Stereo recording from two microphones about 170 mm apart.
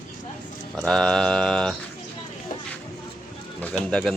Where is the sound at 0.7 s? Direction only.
Centre (ahead or behind).